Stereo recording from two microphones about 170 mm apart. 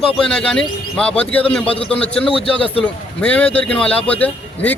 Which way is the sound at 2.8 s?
5° left (ahead or behind).